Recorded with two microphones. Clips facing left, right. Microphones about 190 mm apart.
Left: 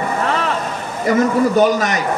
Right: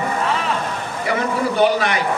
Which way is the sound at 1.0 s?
45° left (ahead or behind).